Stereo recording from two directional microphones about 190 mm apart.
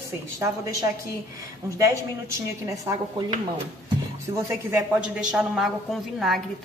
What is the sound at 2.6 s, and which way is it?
A woman's voice, 20° right (ahead or behind).